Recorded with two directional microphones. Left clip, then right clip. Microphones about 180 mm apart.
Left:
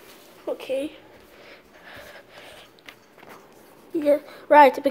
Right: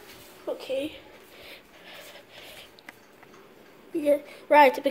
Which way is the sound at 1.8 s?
15° left (ahead or behind).